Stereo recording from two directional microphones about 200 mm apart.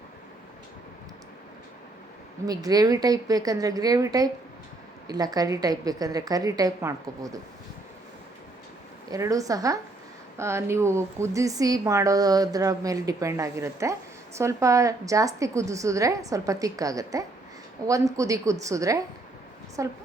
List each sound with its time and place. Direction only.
2.5 s a woman's voice: 20° right (ahead or behind)
9.0 s speech: 15° right (ahead or behind)